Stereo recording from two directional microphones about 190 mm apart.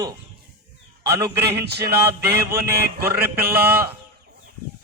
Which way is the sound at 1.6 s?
55° right (ahead or behind).